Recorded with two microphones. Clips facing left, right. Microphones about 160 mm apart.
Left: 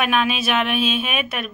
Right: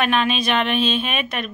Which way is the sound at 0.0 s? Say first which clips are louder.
Right 1 dB; 5° left (ahead or behind).